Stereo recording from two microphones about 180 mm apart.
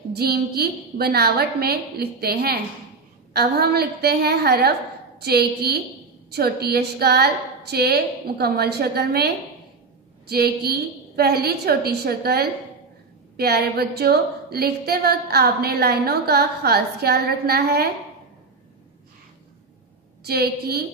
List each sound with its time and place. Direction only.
0.1 s a woman's voice: 60° right (ahead or behind)
20.2 s a woman's voice: 60° right (ahead or behind)